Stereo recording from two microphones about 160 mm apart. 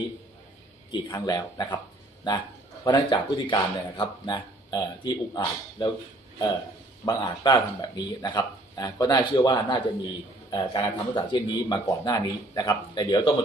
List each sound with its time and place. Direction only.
1.1 s speech: 25° left (ahead or behind)
7.1 s speech: 30° left (ahead or behind)